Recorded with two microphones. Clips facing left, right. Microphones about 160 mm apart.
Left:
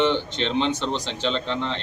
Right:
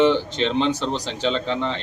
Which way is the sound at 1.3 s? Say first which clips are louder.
Right 3 dB; 5° right (ahead or behind).